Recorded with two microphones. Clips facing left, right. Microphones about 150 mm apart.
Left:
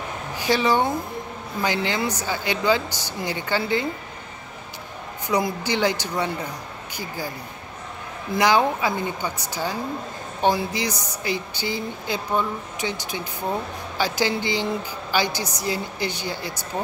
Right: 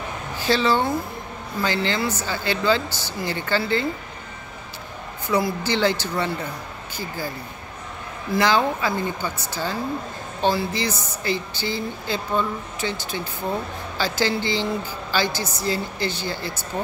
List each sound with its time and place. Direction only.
0.4 s speech: 15° left (ahead or behind)
5.3 s speech: 15° left (ahead or behind)
8.4 s speech: 15° left (ahead or behind)